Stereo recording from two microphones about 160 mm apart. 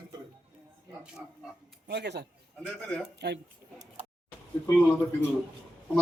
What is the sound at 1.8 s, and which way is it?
Speech, 90° right.